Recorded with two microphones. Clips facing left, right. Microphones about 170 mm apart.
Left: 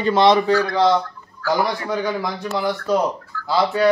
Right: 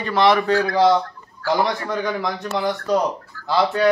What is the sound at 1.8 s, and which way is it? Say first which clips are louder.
A man's voice: left 1 dB; 5° left (ahead or behind).